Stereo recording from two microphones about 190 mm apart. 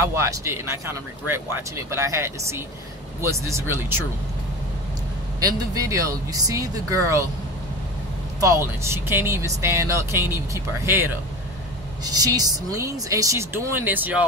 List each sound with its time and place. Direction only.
0.0 s speech: 15° right (ahead or behind)
5.4 s speech: 15° right (ahead or behind)
8.4 s speech: 15° right (ahead or behind)